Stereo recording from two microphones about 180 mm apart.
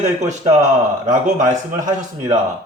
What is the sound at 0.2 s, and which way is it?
A man's voice, 40° right (ahead or behind).